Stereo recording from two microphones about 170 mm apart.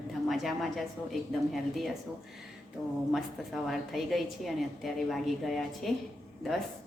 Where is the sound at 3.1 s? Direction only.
Centre (ahead or behind).